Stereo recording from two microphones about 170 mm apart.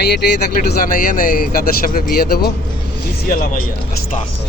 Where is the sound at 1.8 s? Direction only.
55° left (ahead or behind).